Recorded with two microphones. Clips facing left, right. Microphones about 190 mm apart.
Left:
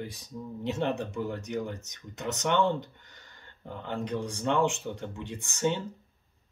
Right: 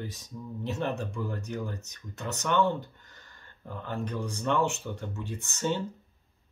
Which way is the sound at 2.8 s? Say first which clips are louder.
Left 1 dB; 70° left (ahead or behind).